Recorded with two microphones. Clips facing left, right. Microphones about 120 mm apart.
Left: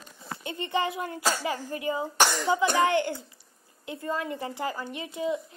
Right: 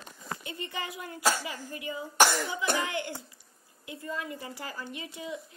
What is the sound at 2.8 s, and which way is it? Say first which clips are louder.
Speech: left 10 dB; 30° left (ahead or behind).